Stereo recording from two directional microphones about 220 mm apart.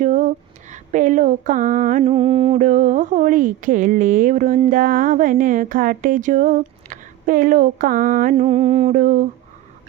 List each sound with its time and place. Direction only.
0.0 s speech: 35° right (ahead or behind)